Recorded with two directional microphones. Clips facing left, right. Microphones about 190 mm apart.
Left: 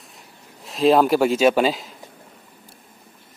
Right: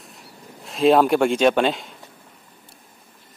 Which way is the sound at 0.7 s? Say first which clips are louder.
Even; centre (ahead or behind).